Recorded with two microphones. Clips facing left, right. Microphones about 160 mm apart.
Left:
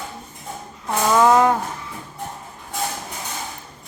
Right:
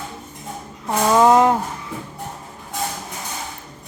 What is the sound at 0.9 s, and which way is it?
Speech, 15° right (ahead or behind).